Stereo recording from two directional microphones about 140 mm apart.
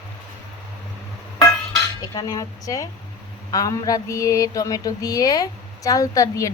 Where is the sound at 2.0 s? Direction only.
25° left (ahead or behind).